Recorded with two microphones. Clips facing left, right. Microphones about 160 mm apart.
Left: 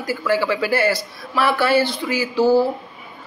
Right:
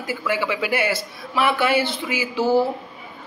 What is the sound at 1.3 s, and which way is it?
Speech, 15° right (ahead or behind).